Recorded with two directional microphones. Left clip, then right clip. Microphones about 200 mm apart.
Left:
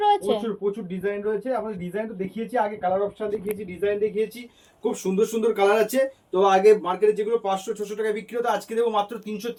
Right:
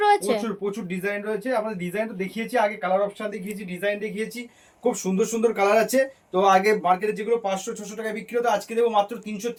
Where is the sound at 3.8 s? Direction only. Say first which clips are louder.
Left 3 dB; 60° right (ahead or behind).